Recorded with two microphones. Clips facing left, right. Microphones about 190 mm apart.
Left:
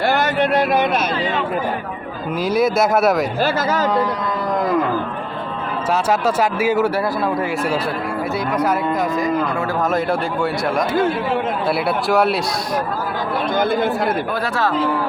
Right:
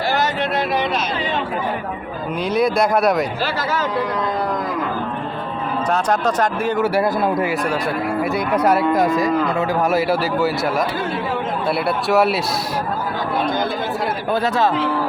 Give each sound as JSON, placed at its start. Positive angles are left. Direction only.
{"t": 0.0, "sound": "a sound", "side_deg": 55}
{"t": 2.4, "sound": "speech", "side_deg": 0}
{"t": 3.4, "sound": "speech", "side_deg": 40}
{"t": 5.9, "sound": "speech", "side_deg": 5}
{"t": 9.9, "sound": "speech", "side_deg": -5}
{"t": 11.9, "sound": "speech", "side_deg": 0}
{"t": 14.4, "sound": "speech", "side_deg": -20}